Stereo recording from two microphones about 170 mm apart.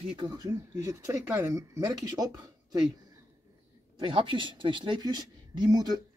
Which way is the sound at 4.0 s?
30° right (ahead or behind).